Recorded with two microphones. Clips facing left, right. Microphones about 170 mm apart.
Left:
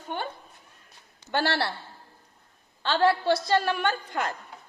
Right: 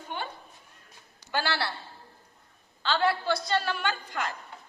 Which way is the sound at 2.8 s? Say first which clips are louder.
Left 4 dB; 50° left (ahead or behind).